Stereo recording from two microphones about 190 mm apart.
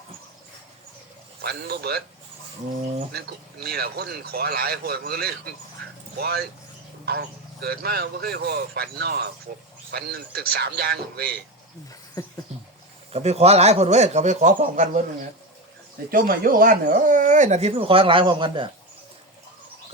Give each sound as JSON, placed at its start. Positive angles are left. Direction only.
{"t": 1.4, "sound": "speech", "side_deg": -55}
{"t": 3.1, "sound": "speech", "side_deg": -55}
{"t": 13.1, "sound": "speech", "side_deg": -35}
{"t": 16.1, "sound": "speech", "side_deg": -50}